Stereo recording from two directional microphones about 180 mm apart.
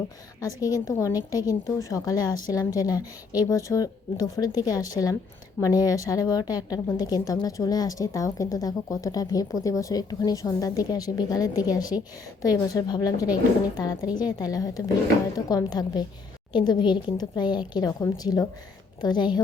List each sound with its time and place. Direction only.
0.4 s a woman's voice: 20° left (ahead or behind)